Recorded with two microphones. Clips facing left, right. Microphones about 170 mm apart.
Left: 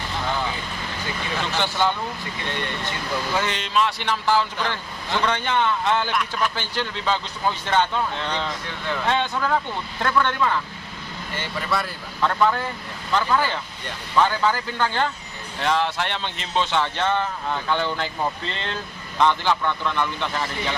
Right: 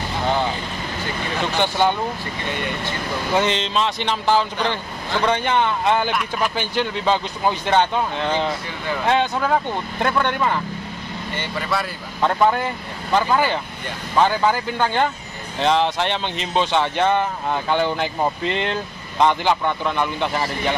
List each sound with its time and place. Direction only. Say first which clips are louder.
1.6 s speech: right 4 dB; 15° right (ahead or behind)
3.3 s speech: right 4 dB; 20° right (ahead or behind)
8.3 s speech: right 6 dB; 5° right (ahead or behind); by 10.6 s 25° right (ahead or behind)
11.3 s speech: right 1 dB; centre (ahead or behind)
12.2 s speech: right 3 dB; 25° right (ahead or behind)